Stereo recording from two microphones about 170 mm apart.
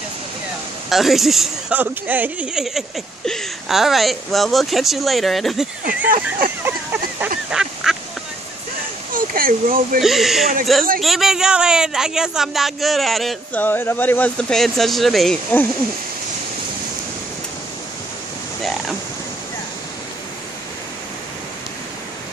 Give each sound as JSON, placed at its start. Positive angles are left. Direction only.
{"t": 0.8, "sound": "speech", "side_deg": 0}
{"t": 6.6, "sound": "a sound", "side_deg": -10}
{"t": 9.1, "sound": "speech", "side_deg": -55}
{"t": 9.9, "sound": "speech", "side_deg": 0}